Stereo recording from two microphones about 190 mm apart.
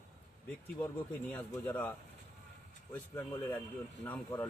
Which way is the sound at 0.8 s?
10° left (ahead or behind).